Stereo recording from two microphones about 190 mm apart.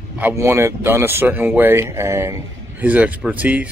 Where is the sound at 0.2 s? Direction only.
15° right (ahead or behind).